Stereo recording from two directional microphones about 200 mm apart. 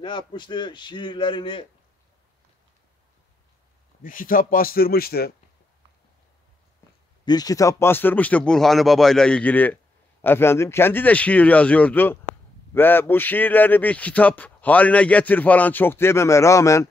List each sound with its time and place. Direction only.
0.0 s a man's voice: 20° left (ahead or behind)
4.0 s a man's voice: 45° left (ahead or behind)
7.2 s a man's voice: 20° left (ahead or behind)